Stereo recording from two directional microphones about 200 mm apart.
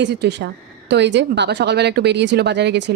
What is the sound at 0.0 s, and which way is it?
Speech, 60° right (ahead or behind).